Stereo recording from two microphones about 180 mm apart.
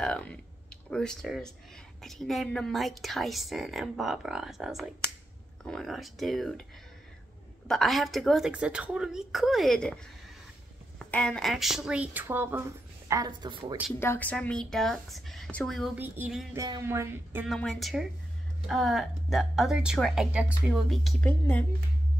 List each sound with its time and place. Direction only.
0.0 s a woman's voice: 5° left (ahead or behind)
7.6 s a woman's voice: centre (ahead or behind)
11.1 s a woman's voice: 5° left (ahead or behind); by 12.6 s 10° right (ahead or behind)
13.1 s a woman's voice: 20° right (ahead or behind)
13.9 s a woman's voice: 10° left (ahead or behind); by 16.4 s 5° right (ahead or behind)
16.5 s speech: 20° right (ahead or behind)
17.5 s a woman's voice: centre (ahead or behind)